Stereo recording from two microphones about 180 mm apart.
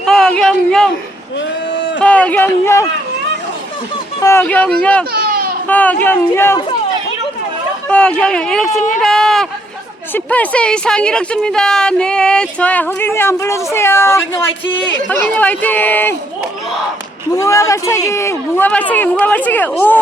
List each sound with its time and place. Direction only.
0.0 s a sound: centre (ahead or behind)
2.0 s speech: 5° left (ahead or behind)
4.2 s speech: 15° left (ahead or behind)
5.1 s a sound: 55° right (ahead or behind)
5.6 s speech: 10° left (ahead or behind)
7.9 s speech: 5° left (ahead or behind)
17.3 s speech: 15° left (ahead or behind)